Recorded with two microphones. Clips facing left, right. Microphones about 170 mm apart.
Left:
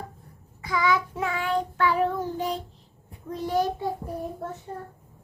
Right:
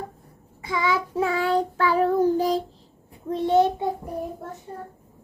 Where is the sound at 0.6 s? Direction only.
25° right (ahead or behind).